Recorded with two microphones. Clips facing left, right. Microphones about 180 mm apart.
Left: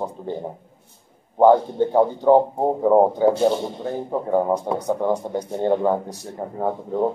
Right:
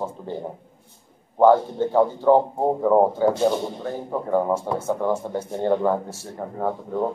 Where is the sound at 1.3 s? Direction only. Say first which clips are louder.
Left 1 dB; 15° left (ahead or behind).